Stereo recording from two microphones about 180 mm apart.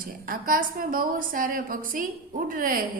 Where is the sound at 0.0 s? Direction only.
50° right (ahead or behind).